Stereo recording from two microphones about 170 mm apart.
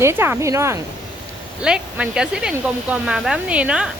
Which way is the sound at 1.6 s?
5° right (ahead or behind).